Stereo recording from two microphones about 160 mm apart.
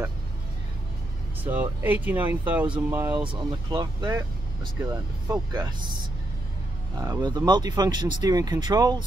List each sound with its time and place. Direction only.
1.4 s speech: 10° right (ahead or behind)
3.2 s speech: 30° right (ahead or behind)